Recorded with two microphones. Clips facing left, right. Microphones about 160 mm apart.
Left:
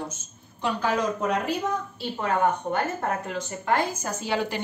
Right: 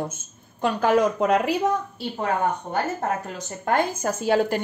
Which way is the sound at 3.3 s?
50° right (ahead or behind).